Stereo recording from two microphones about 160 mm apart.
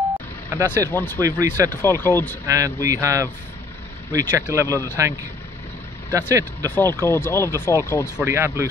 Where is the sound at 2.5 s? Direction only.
20° right (ahead or behind).